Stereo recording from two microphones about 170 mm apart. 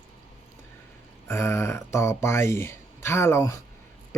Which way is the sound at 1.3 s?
15° left (ahead or behind).